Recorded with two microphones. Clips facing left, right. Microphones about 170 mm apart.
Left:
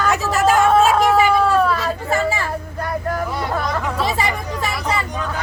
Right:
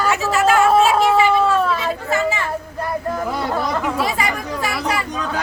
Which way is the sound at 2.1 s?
35° left (ahead or behind).